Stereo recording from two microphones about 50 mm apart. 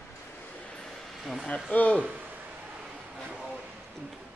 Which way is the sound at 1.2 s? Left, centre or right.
Centre.